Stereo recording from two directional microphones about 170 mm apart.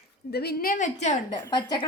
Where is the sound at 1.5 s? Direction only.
25° left (ahead or behind).